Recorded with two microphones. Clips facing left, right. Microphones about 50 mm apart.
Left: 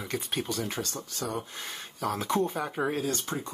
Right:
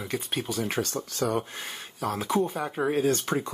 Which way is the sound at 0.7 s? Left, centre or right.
Right.